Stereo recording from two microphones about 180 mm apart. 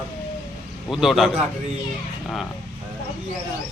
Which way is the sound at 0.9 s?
Centre (ahead or behind).